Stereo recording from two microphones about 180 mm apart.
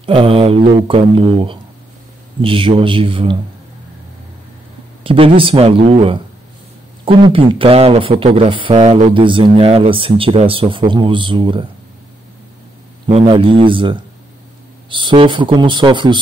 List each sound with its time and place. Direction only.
0.0 s speech: 30° right (ahead or behind)
5.0 s speech: 30° right (ahead or behind)
13.0 s speech: 30° right (ahead or behind)